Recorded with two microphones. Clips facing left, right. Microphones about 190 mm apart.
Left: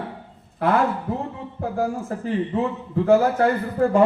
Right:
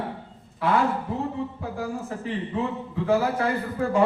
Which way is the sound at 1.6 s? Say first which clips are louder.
Left 6 dB; 50° left (ahead or behind).